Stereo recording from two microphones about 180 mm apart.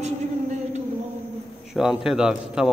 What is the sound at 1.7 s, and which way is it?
A man's voice, centre (ahead or behind).